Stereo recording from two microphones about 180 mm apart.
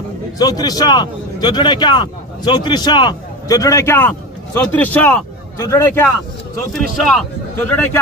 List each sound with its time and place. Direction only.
0.4 s a man's voice: 20° left (ahead or behind)
6.7 s a man's voice: centre (ahead or behind)